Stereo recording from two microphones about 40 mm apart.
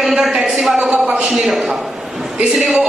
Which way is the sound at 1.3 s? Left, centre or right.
Centre.